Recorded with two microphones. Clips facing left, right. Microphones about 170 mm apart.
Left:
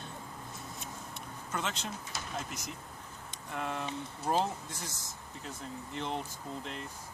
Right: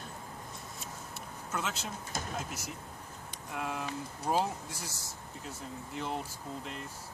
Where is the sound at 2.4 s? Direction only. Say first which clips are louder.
Right 1 dB; 5° right (ahead or behind).